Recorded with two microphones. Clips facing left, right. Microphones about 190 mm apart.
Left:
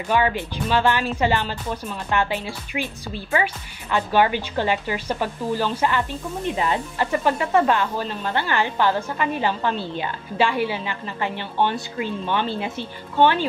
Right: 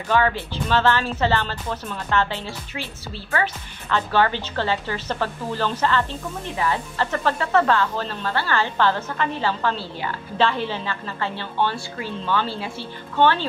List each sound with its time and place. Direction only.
0.1 s speech: 15° left (ahead or behind)